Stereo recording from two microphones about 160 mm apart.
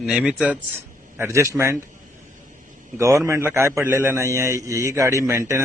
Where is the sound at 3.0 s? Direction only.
20° right (ahead or behind).